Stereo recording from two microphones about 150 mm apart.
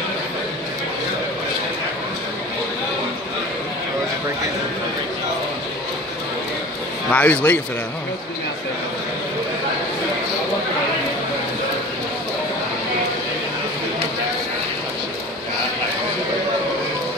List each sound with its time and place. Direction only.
7.1 s speech: 10° left (ahead or behind)